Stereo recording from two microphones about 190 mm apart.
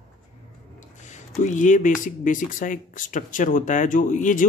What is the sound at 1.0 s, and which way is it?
Speech, 40° left (ahead or behind).